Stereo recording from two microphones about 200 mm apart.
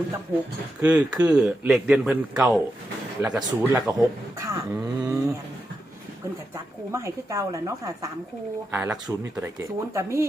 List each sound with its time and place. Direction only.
0.8 s a man's voice: 5° right (ahead or behind)
6.9 s speech: 15° right (ahead or behind)